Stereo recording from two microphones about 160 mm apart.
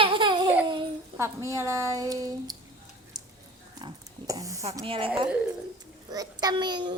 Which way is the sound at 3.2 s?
25° right (ahead or behind).